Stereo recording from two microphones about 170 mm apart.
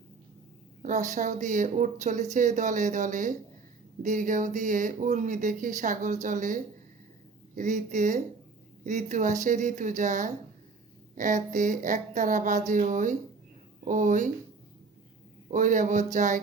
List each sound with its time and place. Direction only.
0.8 s speech: 45° right (ahead or behind)
15.4 s speech: 50° right (ahead or behind)